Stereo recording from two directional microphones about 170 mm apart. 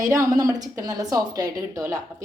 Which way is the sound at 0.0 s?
20° right (ahead or behind).